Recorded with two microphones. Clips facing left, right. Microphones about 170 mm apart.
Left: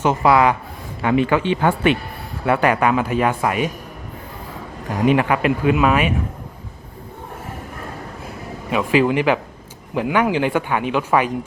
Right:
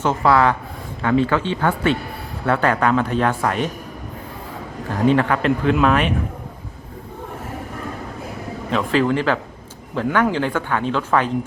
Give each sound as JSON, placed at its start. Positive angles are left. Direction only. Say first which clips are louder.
{"t": 0.0, "sound": "a man's voice", "louder": "left 1 dB", "side_deg": 20}
{"t": 5.0, "sound": "a man's voice", "louder": "even", "side_deg": 10}
{"t": 8.7, "sound": "a man's voice", "louder": "left 2 dB", "side_deg": 10}